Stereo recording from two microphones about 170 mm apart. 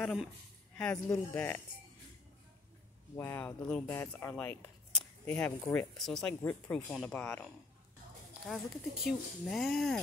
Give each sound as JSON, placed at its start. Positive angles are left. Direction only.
{"t": 0.0, "sound": "speech", "side_deg": 0}
{"t": 3.2, "sound": "speech", "side_deg": 10}
{"t": 3.8, "sound": "speech", "side_deg": 15}
{"t": 9.0, "sound": "speech", "side_deg": 0}